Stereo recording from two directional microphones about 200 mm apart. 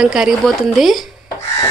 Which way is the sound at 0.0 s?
5° right (ahead or behind).